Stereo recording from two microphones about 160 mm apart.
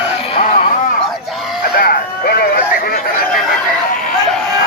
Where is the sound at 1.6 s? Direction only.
70° left (ahead or behind).